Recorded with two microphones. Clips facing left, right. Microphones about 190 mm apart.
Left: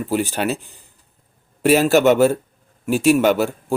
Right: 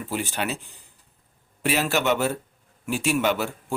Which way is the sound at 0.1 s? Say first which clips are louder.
Left 7 dB; 40° left (ahead or behind).